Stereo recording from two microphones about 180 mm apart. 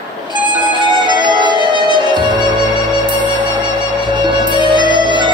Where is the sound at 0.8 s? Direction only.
25° right (ahead or behind).